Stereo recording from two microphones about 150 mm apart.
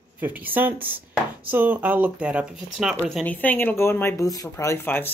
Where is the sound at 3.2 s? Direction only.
10° left (ahead or behind).